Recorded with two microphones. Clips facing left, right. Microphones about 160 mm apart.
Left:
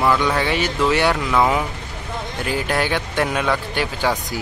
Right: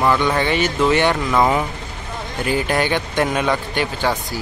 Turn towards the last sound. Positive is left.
turn(degrees=0)  # may be behind; listen again after turning